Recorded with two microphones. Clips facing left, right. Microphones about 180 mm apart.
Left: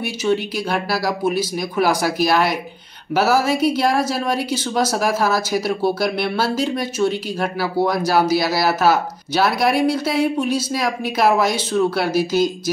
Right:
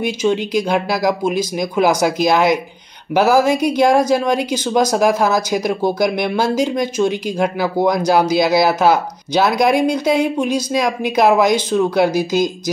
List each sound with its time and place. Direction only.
0.3 s speech: 15° right (ahead or behind)